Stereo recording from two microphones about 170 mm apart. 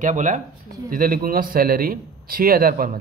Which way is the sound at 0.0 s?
45° right (ahead or behind).